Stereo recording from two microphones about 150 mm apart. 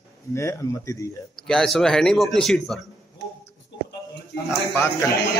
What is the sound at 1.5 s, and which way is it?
A man's voice, 5° left (ahead or behind).